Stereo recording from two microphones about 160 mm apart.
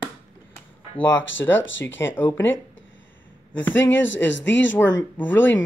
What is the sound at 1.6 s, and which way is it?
Speech, 15° left (ahead or behind).